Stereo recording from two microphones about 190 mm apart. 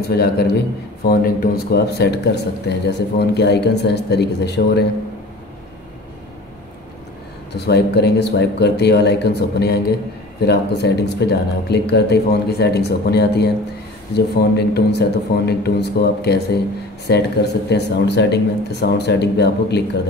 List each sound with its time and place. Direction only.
0.1 s speech: 55° left (ahead or behind)
7.5 s speech: 60° left (ahead or behind)